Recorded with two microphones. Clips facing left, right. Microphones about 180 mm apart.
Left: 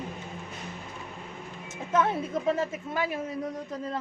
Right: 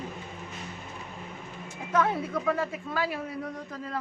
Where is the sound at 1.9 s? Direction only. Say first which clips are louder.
Even; 25° left (ahead or behind).